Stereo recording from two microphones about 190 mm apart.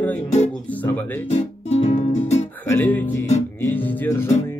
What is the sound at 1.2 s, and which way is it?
Music, 35° left (ahead or behind).